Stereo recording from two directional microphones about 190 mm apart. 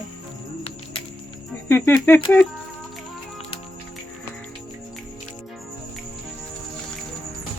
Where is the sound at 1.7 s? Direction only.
10° left (ahead or behind).